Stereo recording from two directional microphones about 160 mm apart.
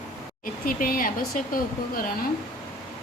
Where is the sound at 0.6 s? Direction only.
60° left (ahead or behind).